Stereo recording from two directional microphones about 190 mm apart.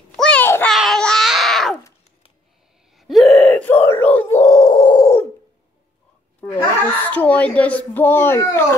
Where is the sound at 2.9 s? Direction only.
Centre (ahead or behind); by 5.2 s 20° left (ahead or behind).